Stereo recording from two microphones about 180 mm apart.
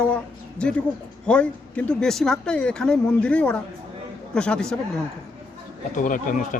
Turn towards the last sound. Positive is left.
turn(degrees=45)  # may be behind; listen again after turning